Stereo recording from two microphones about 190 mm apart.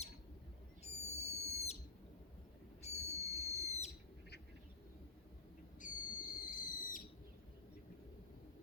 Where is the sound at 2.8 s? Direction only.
35° left (ahead or behind).